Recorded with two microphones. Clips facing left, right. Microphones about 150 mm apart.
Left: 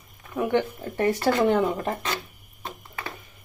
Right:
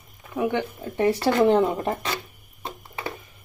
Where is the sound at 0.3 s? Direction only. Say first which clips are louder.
Left 1 dB; 15° right (ahead or behind).